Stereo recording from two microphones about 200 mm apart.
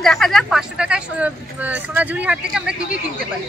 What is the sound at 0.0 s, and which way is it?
Speech, centre (ahead or behind).